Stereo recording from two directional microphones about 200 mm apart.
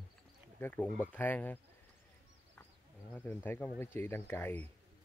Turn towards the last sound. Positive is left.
turn(degrees=10)  # may be behind; listen again after turning